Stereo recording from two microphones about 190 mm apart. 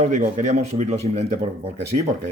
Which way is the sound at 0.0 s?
35° right (ahead or behind).